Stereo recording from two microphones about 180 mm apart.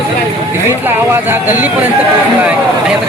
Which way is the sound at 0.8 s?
10° right (ahead or behind).